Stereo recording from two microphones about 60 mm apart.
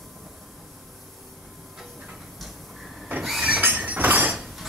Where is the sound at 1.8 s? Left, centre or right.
Centre.